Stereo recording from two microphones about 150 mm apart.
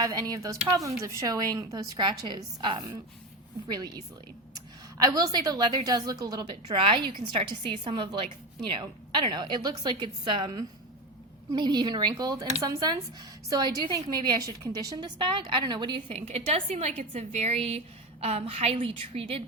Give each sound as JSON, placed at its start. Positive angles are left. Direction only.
{"t": 0.0, "sound": "a woman's voice", "side_deg": -25}
{"t": 5.0, "sound": "a woman's voice", "side_deg": -25}